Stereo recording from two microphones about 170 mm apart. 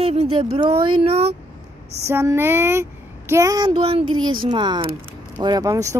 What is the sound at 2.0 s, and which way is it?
Speech, 15° right (ahead or behind).